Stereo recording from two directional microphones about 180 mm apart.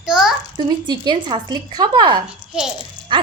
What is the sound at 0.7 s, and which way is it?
A woman's voice, 25° right (ahead or behind).